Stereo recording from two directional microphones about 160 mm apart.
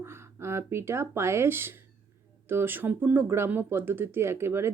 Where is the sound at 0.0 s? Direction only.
15° right (ahead or behind).